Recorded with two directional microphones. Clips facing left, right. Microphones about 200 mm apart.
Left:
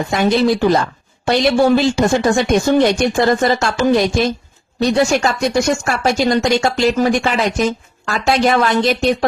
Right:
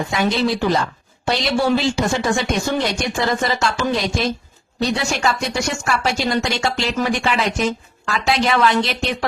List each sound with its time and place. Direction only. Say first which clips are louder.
0.1 s speech: left 6 dB; 50° left (ahead or behind)